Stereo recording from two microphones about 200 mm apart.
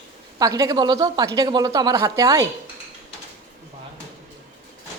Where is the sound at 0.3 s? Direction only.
20° right (ahead or behind).